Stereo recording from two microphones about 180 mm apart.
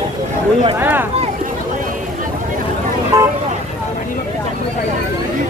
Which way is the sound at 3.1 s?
20° right (ahead or behind).